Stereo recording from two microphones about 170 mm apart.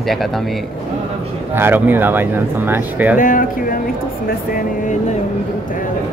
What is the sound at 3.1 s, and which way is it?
Speech, 50° left (ahead or behind).